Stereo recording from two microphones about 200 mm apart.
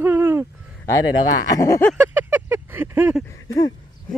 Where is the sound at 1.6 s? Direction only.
15° left (ahead or behind).